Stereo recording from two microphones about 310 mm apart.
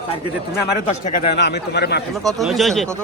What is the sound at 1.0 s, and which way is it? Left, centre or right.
Speech, left.